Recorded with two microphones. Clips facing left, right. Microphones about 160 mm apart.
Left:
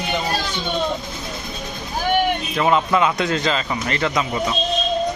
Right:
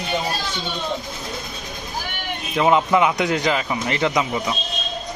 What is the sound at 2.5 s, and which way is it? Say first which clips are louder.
Speech: right 3 dB; 15° right (ahead or behind).